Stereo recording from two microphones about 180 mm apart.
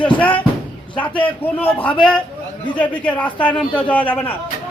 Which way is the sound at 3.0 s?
5° left (ahead or behind).